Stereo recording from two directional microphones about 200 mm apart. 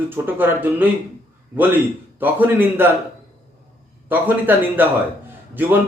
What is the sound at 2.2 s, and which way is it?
Speech, 10° right (ahead or behind).